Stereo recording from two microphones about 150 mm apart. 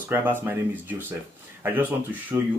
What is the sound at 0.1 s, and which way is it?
Speech, 15° right (ahead or behind).